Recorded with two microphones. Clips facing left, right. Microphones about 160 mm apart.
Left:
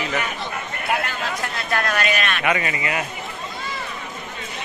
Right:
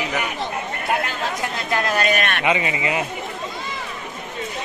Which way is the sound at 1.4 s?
20° right (ahead or behind).